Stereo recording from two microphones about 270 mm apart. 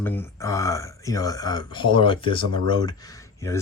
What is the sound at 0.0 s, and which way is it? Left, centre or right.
Speech, centre.